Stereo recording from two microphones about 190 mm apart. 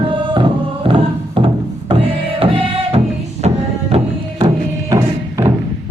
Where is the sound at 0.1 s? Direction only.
25° right (ahead or behind).